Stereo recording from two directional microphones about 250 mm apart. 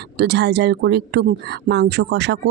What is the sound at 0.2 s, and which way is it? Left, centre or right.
Speech, right.